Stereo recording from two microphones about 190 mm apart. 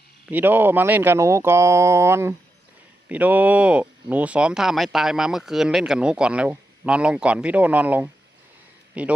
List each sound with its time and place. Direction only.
0.3 s speech: 10° right (ahead or behind)